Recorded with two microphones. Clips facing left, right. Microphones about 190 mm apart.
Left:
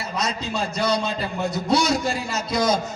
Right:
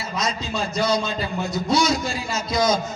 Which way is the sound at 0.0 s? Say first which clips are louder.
Even; 60° left (ahead or behind).